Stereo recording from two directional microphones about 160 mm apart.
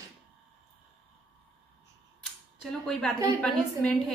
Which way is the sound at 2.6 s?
5° left (ahead or behind).